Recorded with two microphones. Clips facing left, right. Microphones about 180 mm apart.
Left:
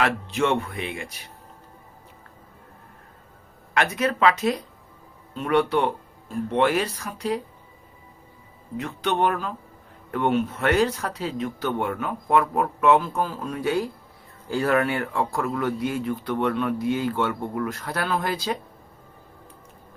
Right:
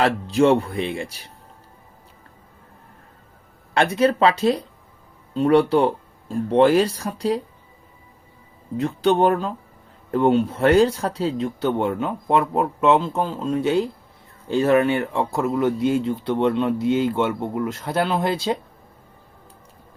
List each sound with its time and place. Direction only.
0.0 s speech: 35° right (ahead or behind)
3.8 s speech: 30° right (ahead or behind)
8.8 s speech: 30° right (ahead or behind)